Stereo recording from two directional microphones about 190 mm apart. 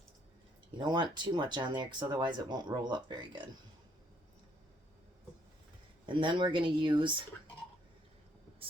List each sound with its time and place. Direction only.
0.8 s speech: 25° right (ahead or behind)
6.1 s speech: 25° right (ahead or behind)